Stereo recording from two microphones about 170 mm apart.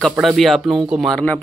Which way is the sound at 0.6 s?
25° right (ahead or behind).